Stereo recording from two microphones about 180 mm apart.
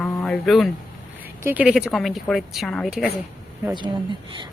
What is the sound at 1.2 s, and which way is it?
A woman's voice, 10° right (ahead or behind).